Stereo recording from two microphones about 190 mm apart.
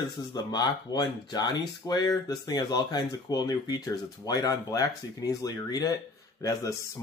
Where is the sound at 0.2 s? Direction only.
20° left (ahead or behind).